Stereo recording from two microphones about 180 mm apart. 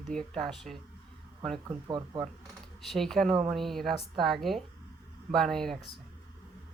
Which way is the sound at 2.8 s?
Centre (ahead or behind).